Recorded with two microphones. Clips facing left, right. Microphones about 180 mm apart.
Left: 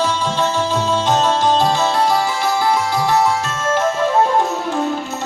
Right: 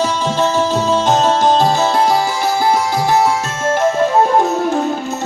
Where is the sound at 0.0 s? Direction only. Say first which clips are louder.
Right 3 dB; 45° right (ahead or behind).